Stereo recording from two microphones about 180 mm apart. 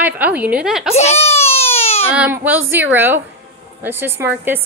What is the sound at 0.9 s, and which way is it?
Speech, 35° left (ahead or behind).